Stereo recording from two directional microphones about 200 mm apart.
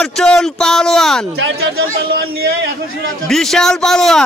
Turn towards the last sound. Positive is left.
turn(degrees=0)  # may be behind; listen again after turning